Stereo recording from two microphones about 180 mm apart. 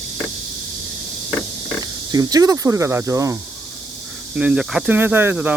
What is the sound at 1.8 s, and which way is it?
Speech, 20° right (ahead or behind).